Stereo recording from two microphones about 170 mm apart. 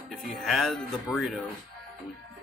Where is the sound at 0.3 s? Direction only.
Centre (ahead or behind).